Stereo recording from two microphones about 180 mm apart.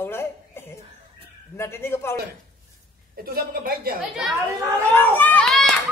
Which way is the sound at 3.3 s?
55° right (ahead or behind).